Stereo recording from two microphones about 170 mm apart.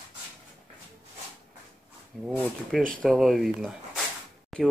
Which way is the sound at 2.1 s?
Centre (ahead or behind).